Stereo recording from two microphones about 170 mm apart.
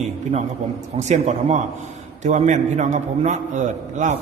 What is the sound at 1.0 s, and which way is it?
A man's voice, 45° right (ahead or behind).